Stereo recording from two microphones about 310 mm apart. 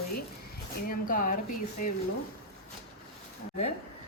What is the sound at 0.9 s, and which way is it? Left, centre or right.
Speech, left.